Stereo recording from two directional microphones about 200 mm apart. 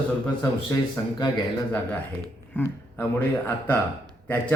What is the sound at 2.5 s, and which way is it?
A man's voice, 10° left (ahead or behind).